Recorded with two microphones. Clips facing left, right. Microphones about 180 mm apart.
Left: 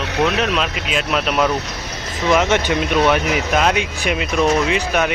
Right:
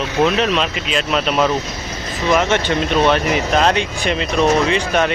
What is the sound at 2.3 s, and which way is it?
Speech, 15° left (ahead or behind).